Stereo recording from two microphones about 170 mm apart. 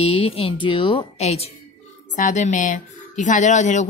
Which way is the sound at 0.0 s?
35° left (ahead or behind).